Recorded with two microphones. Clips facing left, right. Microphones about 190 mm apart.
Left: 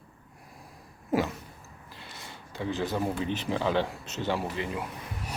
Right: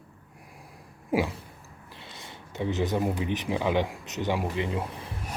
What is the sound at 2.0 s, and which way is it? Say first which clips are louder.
Speech: right 1 dB; 20° right (ahead or behind).